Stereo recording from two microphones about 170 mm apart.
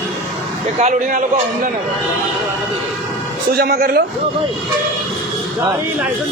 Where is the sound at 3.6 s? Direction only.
70° right (ahead or behind).